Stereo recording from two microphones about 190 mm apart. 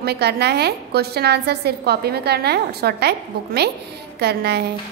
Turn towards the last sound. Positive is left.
turn(degrees=-60)  # may be behind; listen again after turning